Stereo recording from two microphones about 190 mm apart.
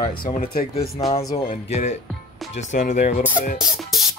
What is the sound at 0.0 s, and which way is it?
Speech, 30° left (ahead or behind).